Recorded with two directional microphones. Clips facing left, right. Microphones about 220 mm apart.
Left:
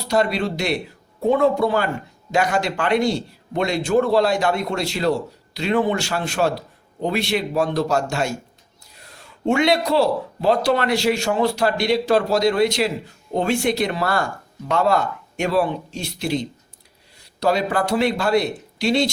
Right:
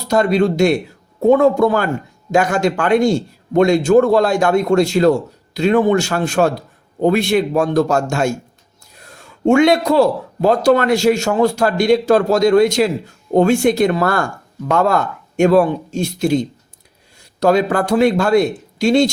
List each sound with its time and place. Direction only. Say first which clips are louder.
0.1 s speech: right 6 dB; 45° right (ahead or behind)